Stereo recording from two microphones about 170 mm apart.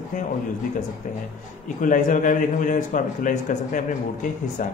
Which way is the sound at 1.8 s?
50° left (ahead or behind).